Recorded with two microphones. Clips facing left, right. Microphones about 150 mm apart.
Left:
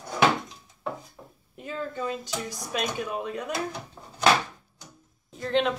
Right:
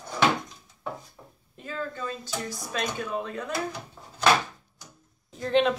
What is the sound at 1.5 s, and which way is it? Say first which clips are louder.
Speech: left 1 dB; 15° left (ahead or behind).